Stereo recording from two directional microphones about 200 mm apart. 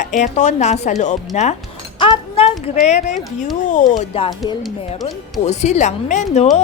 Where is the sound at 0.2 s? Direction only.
35° left (ahead or behind).